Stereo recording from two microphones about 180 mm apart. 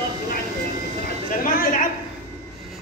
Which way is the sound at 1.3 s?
50° left (ahead or behind).